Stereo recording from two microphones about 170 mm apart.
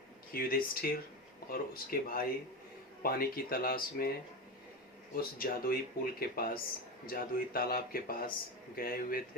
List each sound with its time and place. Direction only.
0.3 s speech: 60° left (ahead or behind)
5.1 s speech: 60° left (ahead or behind)